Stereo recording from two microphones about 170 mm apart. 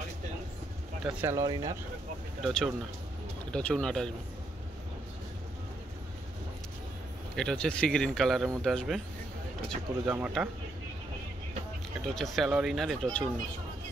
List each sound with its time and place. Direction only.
1.2 s speech: 20° right (ahead or behind)
2.4 s speech: centre (ahead or behind)
7.3 s speech: 5° left (ahead or behind)
10.0 s speech: 10° right (ahead or behind)
12.1 s speech: centre (ahead or behind)